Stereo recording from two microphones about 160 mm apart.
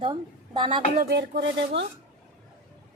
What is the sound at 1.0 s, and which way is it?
Speech, 80° right.